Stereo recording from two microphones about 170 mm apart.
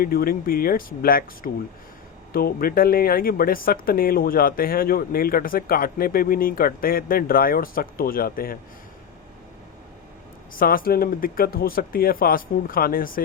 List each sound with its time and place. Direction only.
0.0 s speech: 60° left (ahead or behind)
10.5 s speech: 55° left (ahead or behind)